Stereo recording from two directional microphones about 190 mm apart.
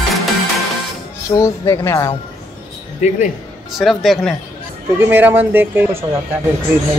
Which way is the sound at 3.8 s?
Centre (ahead or behind).